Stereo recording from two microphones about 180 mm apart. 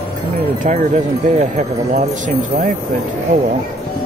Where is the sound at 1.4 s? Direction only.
40° right (ahead or behind).